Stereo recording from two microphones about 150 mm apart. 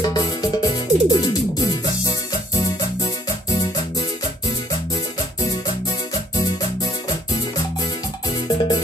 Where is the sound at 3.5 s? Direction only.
25° left (ahead or behind).